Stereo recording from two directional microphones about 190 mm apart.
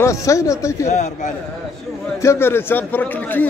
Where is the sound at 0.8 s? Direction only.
40° left (ahead or behind).